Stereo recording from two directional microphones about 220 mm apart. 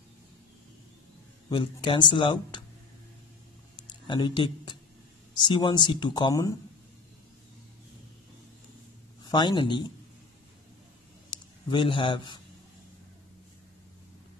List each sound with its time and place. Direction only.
1.5 s speech: 20° left (ahead or behind)
4.1 s speech: 20° left (ahead or behind)
9.2 s speech: 20° left (ahead or behind)
11.2 s speech: 20° left (ahead or behind)